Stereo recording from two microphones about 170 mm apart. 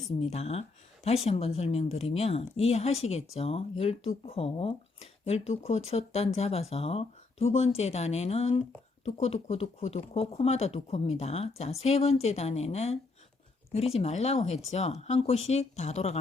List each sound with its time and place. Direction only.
0.2 s speech: 40° left (ahead or behind)